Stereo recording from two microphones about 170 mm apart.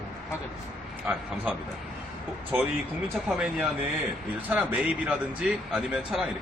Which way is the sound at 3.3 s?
5° right (ahead or behind).